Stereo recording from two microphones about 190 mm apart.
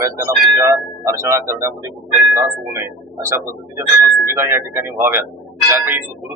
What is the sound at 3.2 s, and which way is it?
Speech, 15° right (ahead or behind).